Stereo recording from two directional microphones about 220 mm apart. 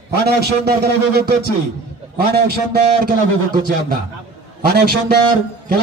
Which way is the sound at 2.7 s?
40° right (ahead or behind).